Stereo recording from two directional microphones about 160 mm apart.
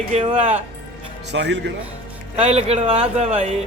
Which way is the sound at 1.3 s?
90° right.